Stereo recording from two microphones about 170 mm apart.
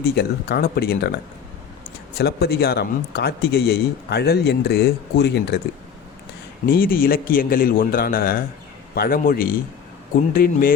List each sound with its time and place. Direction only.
0.0 s speech: 70° left (ahead or behind)
6.7 s speech: 60° left (ahead or behind)